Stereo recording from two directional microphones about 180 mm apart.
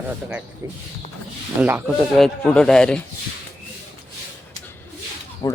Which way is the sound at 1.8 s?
5° left (ahead or behind).